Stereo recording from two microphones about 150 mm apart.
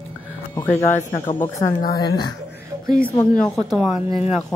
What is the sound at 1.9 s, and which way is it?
Speech, 30° left (ahead or behind).